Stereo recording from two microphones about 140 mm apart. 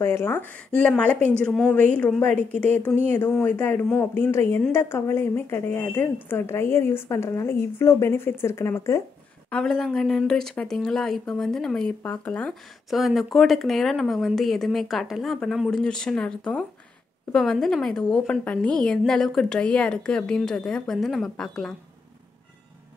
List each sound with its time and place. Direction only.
0.0 s a woman's voice: 15° left (ahead or behind)
9.5 s speech: 5° left (ahead or behind)